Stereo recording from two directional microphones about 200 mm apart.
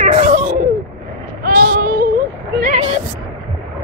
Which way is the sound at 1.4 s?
50° right (ahead or behind).